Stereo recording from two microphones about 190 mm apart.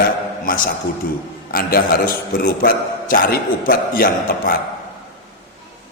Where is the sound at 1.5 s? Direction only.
50° left (ahead or behind).